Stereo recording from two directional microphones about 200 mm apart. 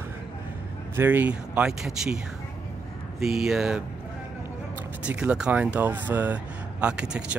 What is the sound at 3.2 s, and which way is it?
Speech, centre (ahead or behind).